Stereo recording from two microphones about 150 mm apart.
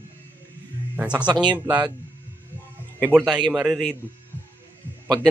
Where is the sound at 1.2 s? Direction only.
30° right (ahead or behind).